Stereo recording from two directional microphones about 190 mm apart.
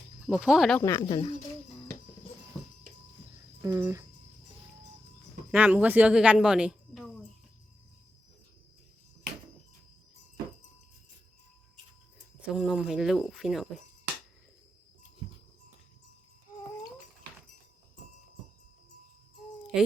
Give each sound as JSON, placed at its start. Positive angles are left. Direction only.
{"t": 0.3, "sound": "speech", "side_deg": -5}
{"t": 0.8, "sound": "speech", "side_deg": 15}
{"t": 3.6, "sound": "speech", "side_deg": -15}
{"t": 5.5, "sound": "a woman's voice", "side_deg": -10}
{"t": 12.5, "sound": "speech", "side_deg": -5}
{"t": 19.7, "sound": "speech", "side_deg": -5}